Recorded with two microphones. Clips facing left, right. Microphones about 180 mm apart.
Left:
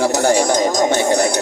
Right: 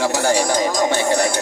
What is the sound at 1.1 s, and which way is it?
Speech, 40° left (ahead or behind).